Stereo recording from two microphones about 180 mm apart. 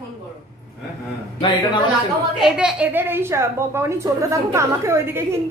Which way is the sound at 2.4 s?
5° right (ahead or behind).